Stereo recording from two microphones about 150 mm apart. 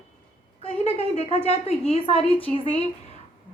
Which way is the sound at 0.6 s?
45° left (ahead or behind).